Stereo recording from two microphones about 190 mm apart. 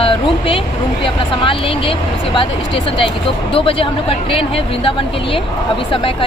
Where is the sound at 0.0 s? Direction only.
30° left (ahead or behind).